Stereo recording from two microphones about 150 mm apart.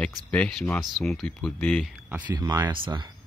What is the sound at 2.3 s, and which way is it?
Speech, 25° right (ahead or behind).